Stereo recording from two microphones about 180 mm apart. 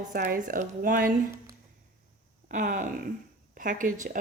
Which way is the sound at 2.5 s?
45° right (ahead or behind).